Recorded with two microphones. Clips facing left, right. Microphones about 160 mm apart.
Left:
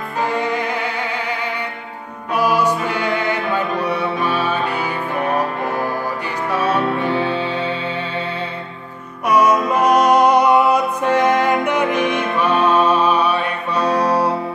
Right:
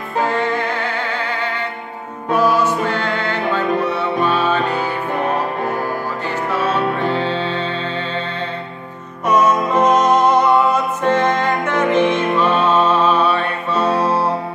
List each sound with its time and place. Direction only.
0.3 s music: 15° left (ahead or behind)
2.3 s music: 10° left (ahead or behind)
6.5 s music: 15° left (ahead or behind)
9.3 s music: 10° left (ahead or behind)